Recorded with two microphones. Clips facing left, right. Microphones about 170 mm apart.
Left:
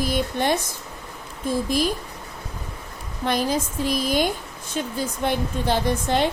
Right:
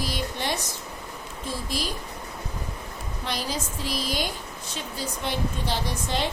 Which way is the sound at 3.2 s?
50° left (ahead or behind).